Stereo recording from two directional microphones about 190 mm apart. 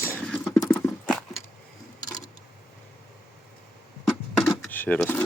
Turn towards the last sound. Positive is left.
turn(degrees=10)  # may be behind; listen again after turning